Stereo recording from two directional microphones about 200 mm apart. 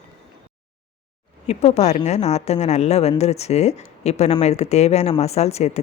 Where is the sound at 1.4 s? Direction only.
35° left (ahead or behind).